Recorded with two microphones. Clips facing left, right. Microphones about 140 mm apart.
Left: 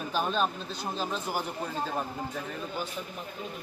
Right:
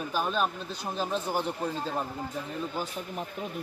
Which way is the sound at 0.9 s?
20° right (ahead or behind).